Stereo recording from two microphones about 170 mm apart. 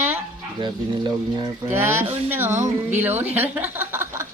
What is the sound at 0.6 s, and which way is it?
Speech, 25° right (ahead or behind).